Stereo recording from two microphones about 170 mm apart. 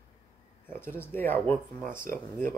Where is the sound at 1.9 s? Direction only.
55° right (ahead or behind).